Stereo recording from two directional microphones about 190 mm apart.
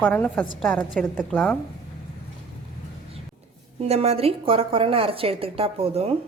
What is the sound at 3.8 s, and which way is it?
A woman's voice, 35° right (ahead or behind).